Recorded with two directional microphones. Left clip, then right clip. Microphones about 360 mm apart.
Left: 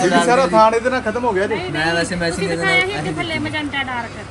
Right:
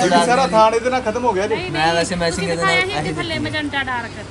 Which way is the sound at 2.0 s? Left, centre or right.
Right.